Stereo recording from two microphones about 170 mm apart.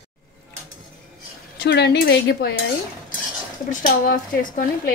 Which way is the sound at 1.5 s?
80° left.